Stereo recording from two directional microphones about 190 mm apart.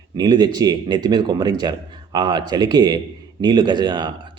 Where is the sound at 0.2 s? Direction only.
20° right (ahead or behind).